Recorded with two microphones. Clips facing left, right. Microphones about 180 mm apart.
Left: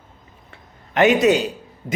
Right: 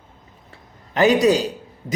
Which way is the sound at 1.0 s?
35° right (ahead or behind).